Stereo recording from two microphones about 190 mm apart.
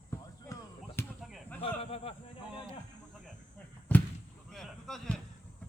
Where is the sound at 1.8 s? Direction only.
30° left (ahead or behind).